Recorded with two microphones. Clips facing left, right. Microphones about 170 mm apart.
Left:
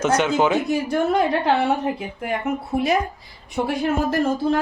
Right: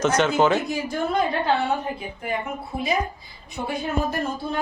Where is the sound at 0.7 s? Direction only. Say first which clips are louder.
Left 5 dB; 75° left (ahead or behind).